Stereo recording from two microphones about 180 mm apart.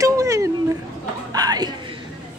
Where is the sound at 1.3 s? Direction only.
20° right (ahead or behind).